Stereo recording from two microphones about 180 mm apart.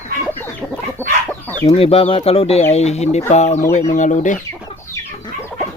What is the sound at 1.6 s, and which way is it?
Speech, 35° left (ahead or behind).